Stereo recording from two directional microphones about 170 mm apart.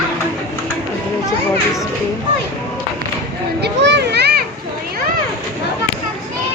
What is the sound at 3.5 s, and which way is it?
Children playing, 80° right.